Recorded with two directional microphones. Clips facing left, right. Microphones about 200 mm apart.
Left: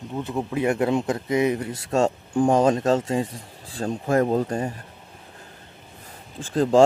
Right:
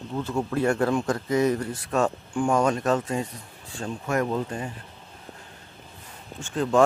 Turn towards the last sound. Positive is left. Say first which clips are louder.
# left 4 dB
turn(degrees=30)  # may be behind; listen again after turning